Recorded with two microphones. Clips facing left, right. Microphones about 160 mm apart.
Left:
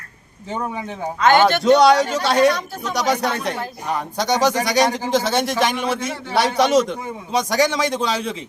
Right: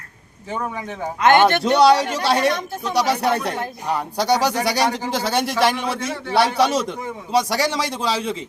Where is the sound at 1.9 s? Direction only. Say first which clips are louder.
Left 2 dB; 5° right (ahead or behind).